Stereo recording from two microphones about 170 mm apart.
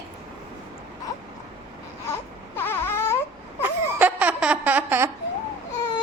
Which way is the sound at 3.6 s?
10° right (ahead or behind).